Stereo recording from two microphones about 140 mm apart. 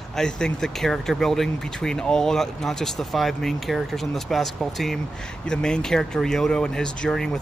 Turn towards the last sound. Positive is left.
turn(degrees=5)  # may be behind; listen again after turning